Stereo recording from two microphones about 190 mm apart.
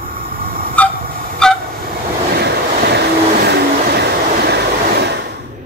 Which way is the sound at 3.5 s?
60° right (ahead or behind).